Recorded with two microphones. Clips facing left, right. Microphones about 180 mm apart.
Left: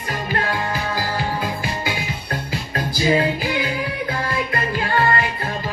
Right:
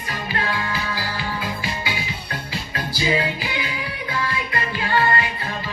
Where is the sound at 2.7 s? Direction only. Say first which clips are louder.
Left 4 dB; 45° left (ahead or behind).